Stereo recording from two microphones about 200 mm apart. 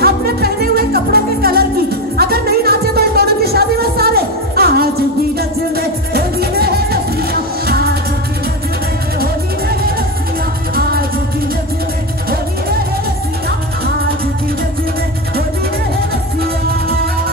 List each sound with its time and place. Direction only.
0.0 s music: 50° right (ahead or behind)
10.7 s music: 50° right (ahead or behind)